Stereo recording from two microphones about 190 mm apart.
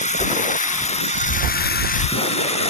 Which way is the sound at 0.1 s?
40° left (ahead or behind).